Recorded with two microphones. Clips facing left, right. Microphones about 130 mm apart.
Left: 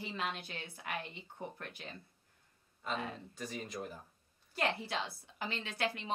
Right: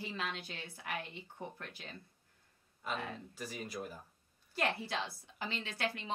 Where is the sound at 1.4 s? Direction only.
20° right (ahead or behind).